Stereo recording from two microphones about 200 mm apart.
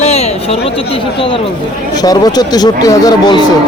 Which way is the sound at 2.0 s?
20° left (ahead or behind).